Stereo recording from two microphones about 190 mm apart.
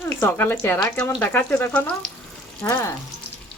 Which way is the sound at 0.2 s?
10° left (ahead or behind).